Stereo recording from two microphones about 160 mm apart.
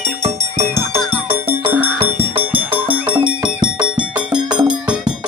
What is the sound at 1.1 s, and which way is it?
Music, 15° right (ahead or behind).